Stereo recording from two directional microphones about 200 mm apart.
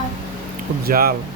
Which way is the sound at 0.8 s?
45° right (ahead or behind).